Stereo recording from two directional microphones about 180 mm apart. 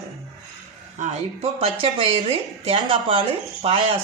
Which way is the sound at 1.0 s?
35° right (ahead or behind).